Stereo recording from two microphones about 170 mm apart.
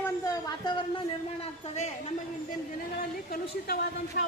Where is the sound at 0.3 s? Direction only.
25° left (ahead or behind).